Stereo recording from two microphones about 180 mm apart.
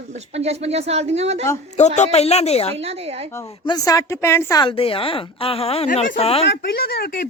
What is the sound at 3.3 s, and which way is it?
Speech, 20° left (ahead or behind).